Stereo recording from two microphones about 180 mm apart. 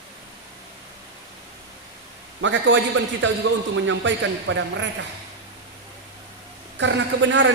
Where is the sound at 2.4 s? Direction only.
90° right.